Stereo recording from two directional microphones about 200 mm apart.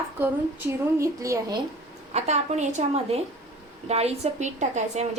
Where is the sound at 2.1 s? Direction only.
35° right (ahead or behind).